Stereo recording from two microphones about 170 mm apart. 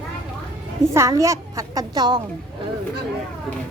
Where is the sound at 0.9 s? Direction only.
15° right (ahead or behind).